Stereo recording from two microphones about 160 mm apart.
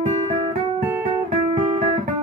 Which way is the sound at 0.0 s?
45° right (ahead or behind).